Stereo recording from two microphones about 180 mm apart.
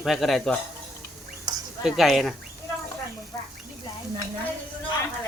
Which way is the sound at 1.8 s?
Centre (ahead or behind).